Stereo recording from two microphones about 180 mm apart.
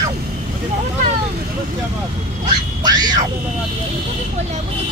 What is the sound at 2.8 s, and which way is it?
Music, 25° right (ahead or behind).